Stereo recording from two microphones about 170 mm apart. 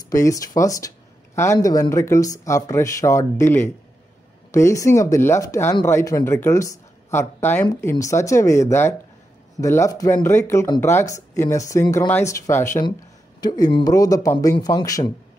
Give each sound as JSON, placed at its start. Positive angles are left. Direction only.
{"t": 0.1, "sound": "speech", "side_deg": 20}